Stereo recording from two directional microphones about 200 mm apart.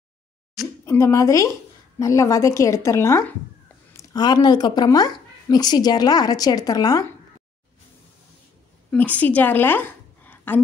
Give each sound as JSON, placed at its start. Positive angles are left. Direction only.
{"t": 0.8, "sound": "a woman's voice", "side_deg": 15}
{"t": 8.9, "sound": "a woman's voice", "side_deg": 10}